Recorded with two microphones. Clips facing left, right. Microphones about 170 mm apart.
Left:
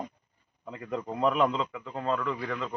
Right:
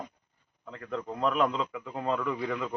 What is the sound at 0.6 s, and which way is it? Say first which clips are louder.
Speech: left 1 dB; 15° left (ahead or behind).